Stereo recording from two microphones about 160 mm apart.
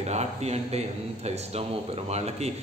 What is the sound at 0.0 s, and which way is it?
Speech, 45° right (ahead or behind).